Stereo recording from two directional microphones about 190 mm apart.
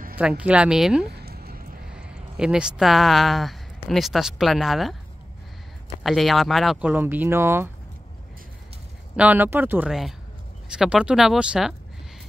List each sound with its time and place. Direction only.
0.2 s speech: 5° right (ahead or behind)
1.0 s a sound: 55° right (ahead or behind)
1.9 s speech: 5° right (ahead or behind)
6.0 s speech: centre (ahead or behind)
9.1 s speech: 10° right (ahead or behind)